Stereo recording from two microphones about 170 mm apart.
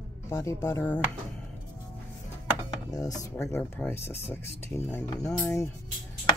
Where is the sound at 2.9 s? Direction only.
20° left (ahead or behind).